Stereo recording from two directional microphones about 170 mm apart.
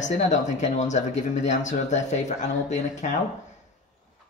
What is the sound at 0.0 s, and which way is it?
Speech, 45° left (ahead or behind).